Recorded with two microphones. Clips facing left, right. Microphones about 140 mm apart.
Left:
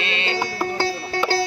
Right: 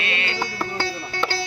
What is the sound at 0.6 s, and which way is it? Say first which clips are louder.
Music: left 4 dB; 35° left (ahead or behind).